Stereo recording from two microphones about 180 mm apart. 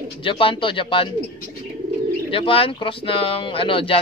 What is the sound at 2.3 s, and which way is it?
Speech, 30° left (ahead or behind).